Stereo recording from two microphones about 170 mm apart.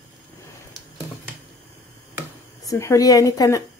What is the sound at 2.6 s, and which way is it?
A woman's voice, 20° left (ahead or behind).